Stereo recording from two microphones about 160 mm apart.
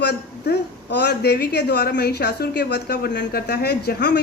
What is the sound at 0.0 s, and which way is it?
A woman's voice, 90° left.